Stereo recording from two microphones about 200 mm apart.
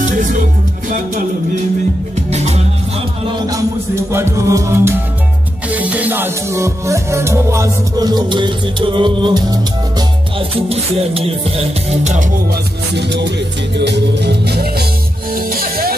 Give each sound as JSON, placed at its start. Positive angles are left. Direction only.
{"t": 0.0, "sound": "music", "side_deg": -40}
{"t": 3.3, "sound": "music", "side_deg": -15}
{"t": 12.9, "sound": "music", "side_deg": -60}